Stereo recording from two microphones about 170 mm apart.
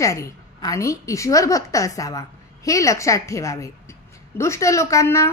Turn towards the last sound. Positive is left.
turn(degrees=15)  # may be behind; listen again after turning